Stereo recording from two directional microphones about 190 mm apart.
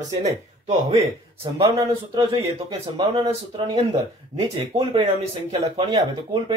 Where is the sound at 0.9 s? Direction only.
15° right (ahead or behind).